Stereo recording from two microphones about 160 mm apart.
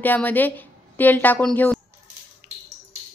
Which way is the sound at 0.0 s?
10° left (ahead or behind).